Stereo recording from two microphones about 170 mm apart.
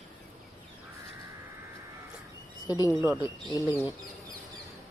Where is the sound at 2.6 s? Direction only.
25° left (ahead or behind).